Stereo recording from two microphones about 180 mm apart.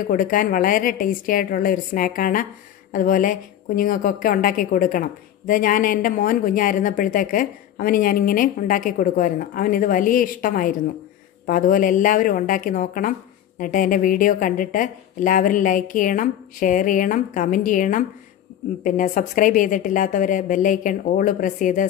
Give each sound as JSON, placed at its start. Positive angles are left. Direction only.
{"t": 0.0, "sound": "speech", "side_deg": 50}